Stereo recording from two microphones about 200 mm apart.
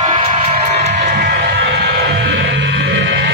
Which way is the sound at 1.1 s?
50° right (ahead or behind).